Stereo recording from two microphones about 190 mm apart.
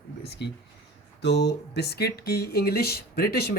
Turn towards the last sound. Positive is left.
turn(degrees=55)  # may be behind; listen again after turning